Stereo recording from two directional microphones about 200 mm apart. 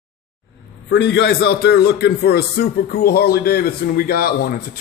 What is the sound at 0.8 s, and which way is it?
A man's voice, 55° left (ahead or behind).